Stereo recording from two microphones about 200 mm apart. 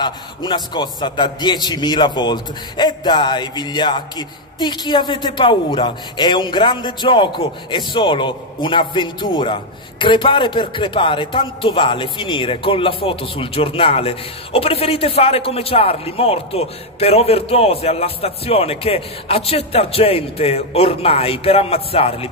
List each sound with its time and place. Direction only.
0.0 s a man's voice: 25° left (ahead or behind)